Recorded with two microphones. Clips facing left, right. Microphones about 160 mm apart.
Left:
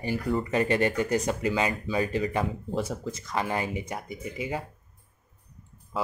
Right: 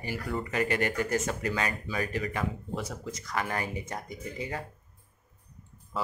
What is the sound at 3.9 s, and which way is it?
Speech, 10° left (ahead or behind).